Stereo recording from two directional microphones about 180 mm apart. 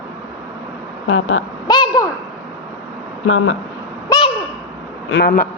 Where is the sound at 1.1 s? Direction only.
90° left.